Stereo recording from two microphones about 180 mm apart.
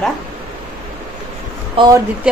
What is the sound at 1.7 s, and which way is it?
Speech, 25° right (ahead or behind).